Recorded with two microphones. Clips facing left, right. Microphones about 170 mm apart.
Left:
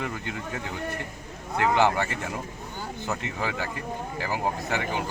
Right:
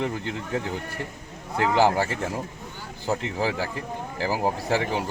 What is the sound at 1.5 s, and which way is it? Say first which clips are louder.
Speech: right 2 dB; 35° right (ahead or behind).